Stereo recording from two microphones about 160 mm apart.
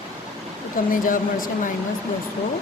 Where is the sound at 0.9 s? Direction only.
55° left (ahead or behind).